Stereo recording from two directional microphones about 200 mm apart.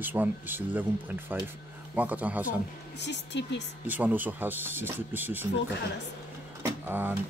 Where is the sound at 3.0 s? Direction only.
60° left (ahead or behind).